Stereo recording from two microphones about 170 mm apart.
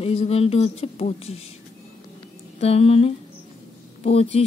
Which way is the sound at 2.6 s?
35° left (ahead or behind).